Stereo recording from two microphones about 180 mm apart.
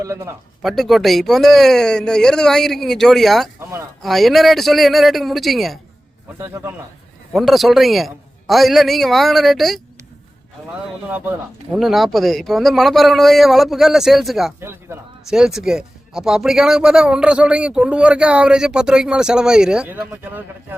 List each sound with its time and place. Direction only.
0.0 s a man's voice: 15° right (ahead or behind)
0.6 s speech: centre (ahead or behind)
6.4 s a man's voice: 15° right (ahead or behind)
7.3 s speech: centre (ahead or behind)
11.1 s speech: 5° right (ahead or behind)
14.6 s speech: 15° right (ahead or behind)
15.3 s speech: 5° right (ahead or behind)